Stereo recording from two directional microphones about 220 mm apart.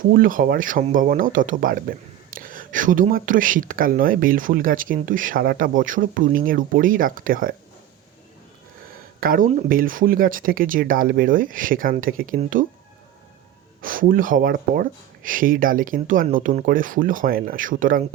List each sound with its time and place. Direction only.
0.0 s speech: 40° right (ahead or behind)
9.2 s speech: 40° right (ahead or behind)
13.8 s speech: 40° right (ahead or behind)